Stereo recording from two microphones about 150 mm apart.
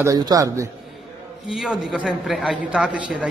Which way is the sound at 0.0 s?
25° right (ahead or behind).